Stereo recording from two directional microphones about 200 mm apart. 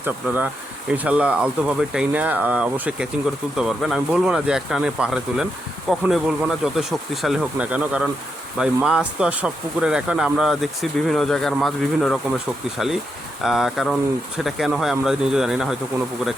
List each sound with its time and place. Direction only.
0.0 s speech: 10° right (ahead or behind)
13.4 s speech: centre (ahead or behind)